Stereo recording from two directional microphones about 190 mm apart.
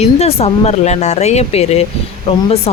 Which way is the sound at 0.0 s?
30° left (ahead or behind).